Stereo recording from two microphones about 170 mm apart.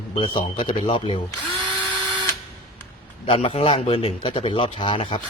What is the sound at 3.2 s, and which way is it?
A man's voice, 35° left (ahead or behind).